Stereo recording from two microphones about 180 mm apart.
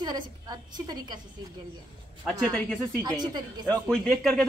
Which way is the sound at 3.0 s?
25° right (ahead or behind).